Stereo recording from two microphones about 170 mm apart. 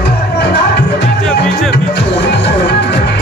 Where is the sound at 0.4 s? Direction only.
70° left (ahead or behind).